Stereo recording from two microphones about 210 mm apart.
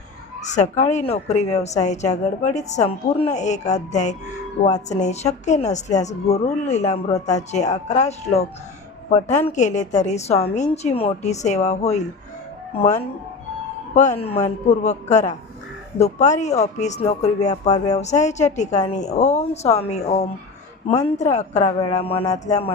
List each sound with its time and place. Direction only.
0.4 s a woman's voice: 35° left (ahead or behind)
13.9 s a woman's voice: 35° left (ahead or behind)
21.9 s a sound: 25° left (ahead or behind)